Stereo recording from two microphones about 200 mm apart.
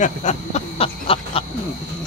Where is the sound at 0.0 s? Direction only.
35° left (ahead or behind).